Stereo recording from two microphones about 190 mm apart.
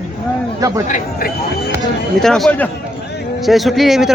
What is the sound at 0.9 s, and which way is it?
Speech, 50° left (ahead or behind).